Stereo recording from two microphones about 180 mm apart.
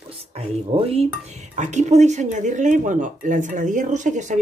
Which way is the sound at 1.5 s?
40° right (ahead or behind).